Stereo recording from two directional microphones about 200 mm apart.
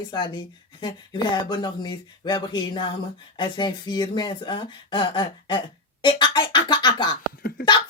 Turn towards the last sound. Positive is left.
turn(degrees=45)  # may be behind; listen again after turning